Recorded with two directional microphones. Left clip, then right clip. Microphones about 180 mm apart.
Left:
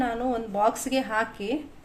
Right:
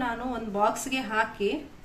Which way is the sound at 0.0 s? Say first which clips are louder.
Left 4 dB; 55° left (ahead or behind).